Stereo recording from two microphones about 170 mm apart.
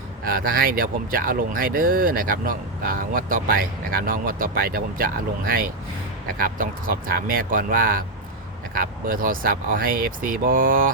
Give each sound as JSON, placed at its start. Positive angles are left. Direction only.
{"t": 0.3, "sound": "speech", "side_deg": -60}